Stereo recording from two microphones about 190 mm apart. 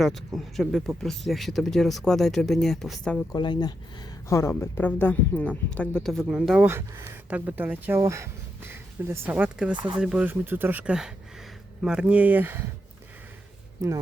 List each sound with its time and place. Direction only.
0.0 s speech: centre (ahead or behind)
3.3 s speech: 25° left (ahead or behind); by 9.7 s 10° right (ahead or behind)
9.7 s speech: 25° right (ahead or behind)
10.0 s speech: 5° right (ahead or behind)
13.8 s speech: 15° right (ahead or behind)